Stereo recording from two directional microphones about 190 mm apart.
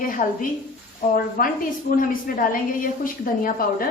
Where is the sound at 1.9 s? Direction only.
45° left (ahead or behind).